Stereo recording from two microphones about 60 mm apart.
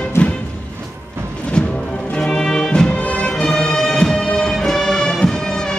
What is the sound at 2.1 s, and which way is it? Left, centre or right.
Music, centre.